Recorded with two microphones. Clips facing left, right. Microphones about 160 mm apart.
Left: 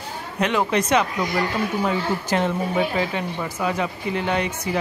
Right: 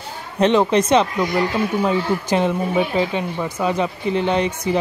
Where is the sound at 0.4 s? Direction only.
25° right (ahead or behind).